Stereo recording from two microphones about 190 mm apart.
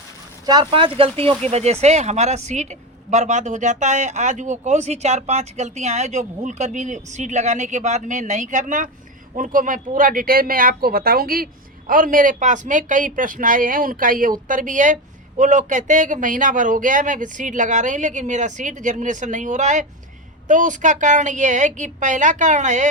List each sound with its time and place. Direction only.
0.4 s speech: 25° right (ahead or behind); by 22.9 s 40° right (ahead or behind)